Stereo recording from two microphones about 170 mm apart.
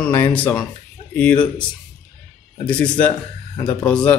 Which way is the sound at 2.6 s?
10° left (ahead or behind).